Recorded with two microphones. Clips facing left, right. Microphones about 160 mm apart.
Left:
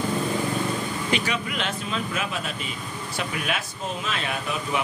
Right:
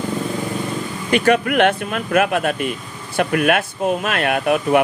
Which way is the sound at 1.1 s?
55° right (ahead or behind).